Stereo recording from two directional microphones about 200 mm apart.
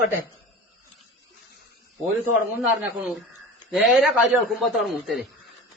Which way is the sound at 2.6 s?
Centre (ahead or behind).